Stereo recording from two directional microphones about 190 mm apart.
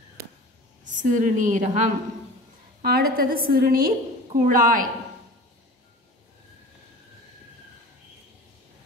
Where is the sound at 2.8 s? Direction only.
55° right (ahead or behind).